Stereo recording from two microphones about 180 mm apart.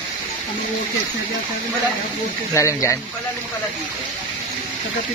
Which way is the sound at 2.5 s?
15° left (ahead or behind).